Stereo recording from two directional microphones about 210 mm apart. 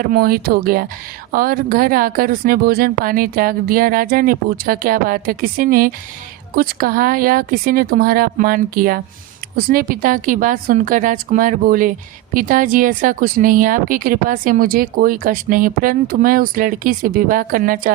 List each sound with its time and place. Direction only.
0.0 s a woman's voice: 45° right (ahead or behind)